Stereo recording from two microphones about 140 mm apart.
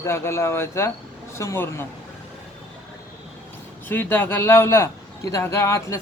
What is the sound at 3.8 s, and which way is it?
Speech, 15° left (ahead or behind).